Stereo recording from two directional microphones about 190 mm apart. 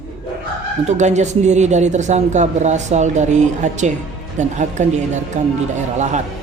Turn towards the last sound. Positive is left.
turn(degrees=-40)  # may be behind; listen again after turning